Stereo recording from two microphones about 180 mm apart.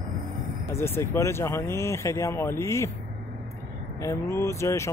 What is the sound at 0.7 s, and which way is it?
Speech, 15° left (ahead or behind).